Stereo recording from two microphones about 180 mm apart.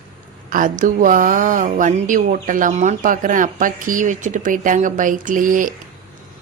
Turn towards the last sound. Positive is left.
turn(degrees=-50)  # may be behind; listen again after turning